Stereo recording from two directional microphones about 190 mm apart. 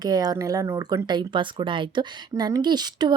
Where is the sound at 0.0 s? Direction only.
20° right (ahead or behind).